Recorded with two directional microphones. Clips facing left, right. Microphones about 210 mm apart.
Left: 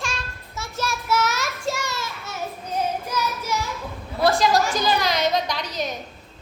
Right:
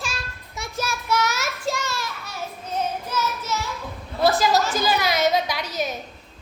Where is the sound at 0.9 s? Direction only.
5° left (ahead or behind).